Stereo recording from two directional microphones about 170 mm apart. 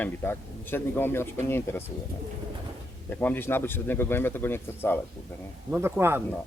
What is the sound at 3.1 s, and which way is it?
Speech, 10° left (ahead or behind).